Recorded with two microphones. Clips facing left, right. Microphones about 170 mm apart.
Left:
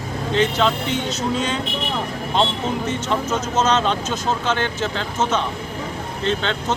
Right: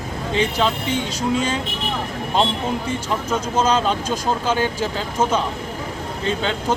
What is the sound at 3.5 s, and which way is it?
Speech, 10° right (ahead or behind).